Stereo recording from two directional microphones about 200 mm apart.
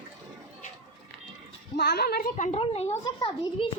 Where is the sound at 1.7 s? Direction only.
55° left (ahead or behind); by 3.7 s 25° left (ahead or behind).